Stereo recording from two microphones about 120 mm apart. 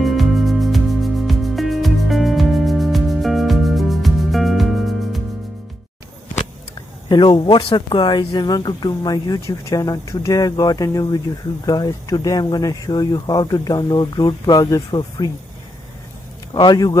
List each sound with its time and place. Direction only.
0.0 s music: centre (ahead or behind)
7.1 s speech: 40° left (ahead or behind)
16.5 s speech: 35° left (ahead or behind)